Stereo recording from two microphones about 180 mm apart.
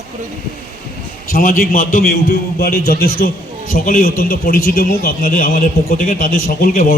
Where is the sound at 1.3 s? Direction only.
50° left (ahead or behind).